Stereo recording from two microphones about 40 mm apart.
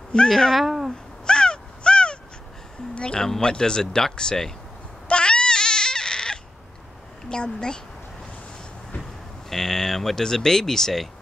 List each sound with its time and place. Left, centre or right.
0.3 s speech: centre
0.6 s speech: centre
1.2 s crow: left
2.9 s speech: left
5.0 s a sound: left
7.2 s speech: left
9.5 s speech: centre